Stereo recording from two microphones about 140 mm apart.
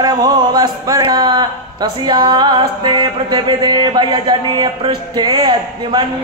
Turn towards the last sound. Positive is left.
turn(degrees=-30)  # may be behind; listen again after turning